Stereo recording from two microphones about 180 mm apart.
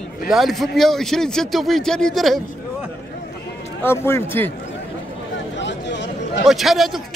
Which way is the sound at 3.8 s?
15° left (ahead or behind).